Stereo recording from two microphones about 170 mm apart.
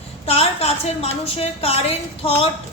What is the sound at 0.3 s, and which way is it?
A woman's voice, 35° left (ahead or behind).